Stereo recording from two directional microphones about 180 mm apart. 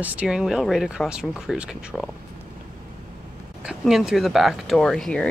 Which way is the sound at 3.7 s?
Centre (ahead or behind).